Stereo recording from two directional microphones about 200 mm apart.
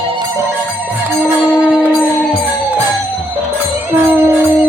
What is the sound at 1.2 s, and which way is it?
Music, 5° right (ahead or behind).